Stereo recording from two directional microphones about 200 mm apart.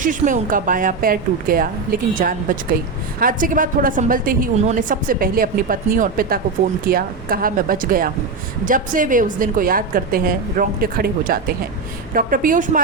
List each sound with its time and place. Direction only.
0.0 s a woman's voice: 40° right (ahead or behind)